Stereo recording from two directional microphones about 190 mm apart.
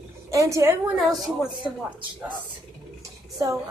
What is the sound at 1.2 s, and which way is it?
Speech, 5° right (ahead or behind).